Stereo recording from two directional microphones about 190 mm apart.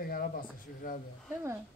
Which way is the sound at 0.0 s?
50° left (ahead or behind).